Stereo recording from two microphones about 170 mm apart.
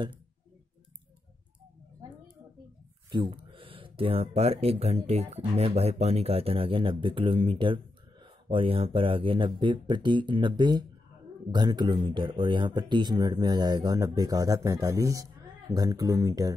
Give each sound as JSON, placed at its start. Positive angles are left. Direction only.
{"t": 3.1, "sound": "speech", "side_deg": -25}